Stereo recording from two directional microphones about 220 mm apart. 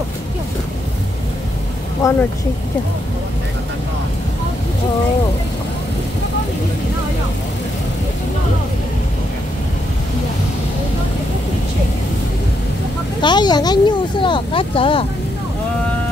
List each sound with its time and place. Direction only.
2.0 s speech: 15° left (ahead or behind)
13.2 s speech: 20° left (ahead or behind)